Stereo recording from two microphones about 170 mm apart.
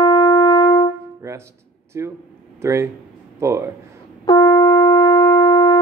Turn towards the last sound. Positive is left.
turn(degrees=25)  # may be behind; listen again after turning